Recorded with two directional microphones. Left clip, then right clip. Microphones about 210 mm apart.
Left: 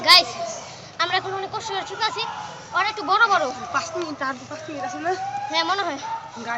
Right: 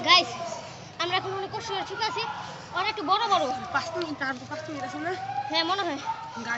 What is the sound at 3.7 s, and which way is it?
Speech, 20° right (ahead or behind).